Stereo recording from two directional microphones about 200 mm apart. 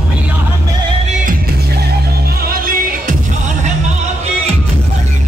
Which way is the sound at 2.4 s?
45° right (ahead or behind).